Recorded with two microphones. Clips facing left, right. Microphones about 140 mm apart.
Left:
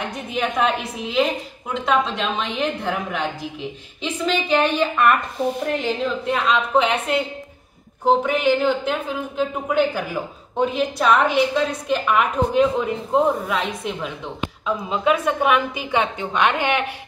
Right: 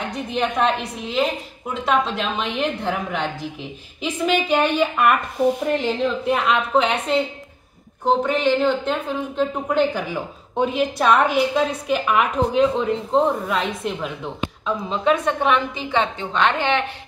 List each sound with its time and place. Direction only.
0.3 s a woman's voice: 5° left (ahead or behind)